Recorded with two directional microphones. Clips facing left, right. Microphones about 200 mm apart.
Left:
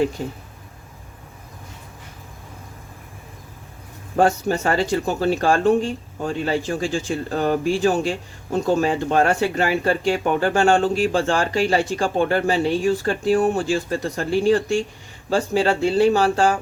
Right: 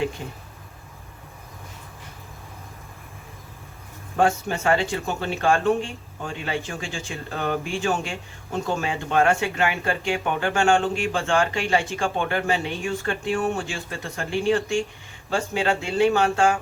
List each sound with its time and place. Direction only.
0.2 s speech: 40° left (ahead or behind)
4.2 s speech: 40° left (ahead or behind)